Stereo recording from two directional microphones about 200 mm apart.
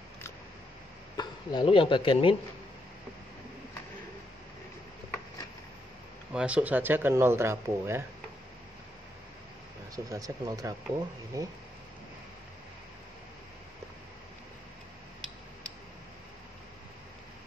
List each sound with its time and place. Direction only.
1.1 s speech: 20° left (ahead or behind)
6.3 s speech: 5° right (ahead or behind)
9.9 s speech: 15° right (ahead or behind)